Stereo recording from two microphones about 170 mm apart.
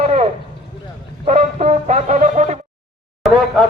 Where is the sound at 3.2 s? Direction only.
Centre (ahead or behind).